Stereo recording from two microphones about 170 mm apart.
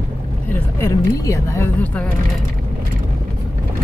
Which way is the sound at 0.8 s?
20° left (ahead or behind).